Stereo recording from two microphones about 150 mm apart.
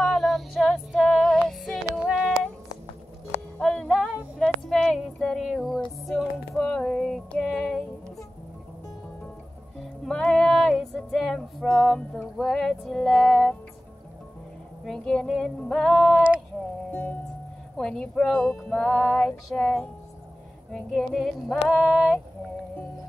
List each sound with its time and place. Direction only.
0.0 s female singing: centre (ahead or behind)
3.5 s music: 5° left (ahead or behind)
4.4 s a sound: 5° left (ahead or behind)
6.0 s music: centre (ahead or behind)
9.8 s music: 5° left (ahead or behind)
14.9 s female singing: 5° left (ahead or behind)
16.9 s music: 10° left (ahead or behind)
20.7 s female singing: 5° left (ahead or behind)